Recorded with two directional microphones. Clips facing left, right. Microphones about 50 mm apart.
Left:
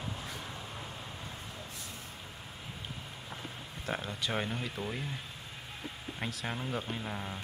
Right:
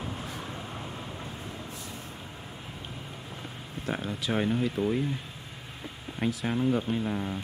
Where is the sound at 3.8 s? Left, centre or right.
Centre.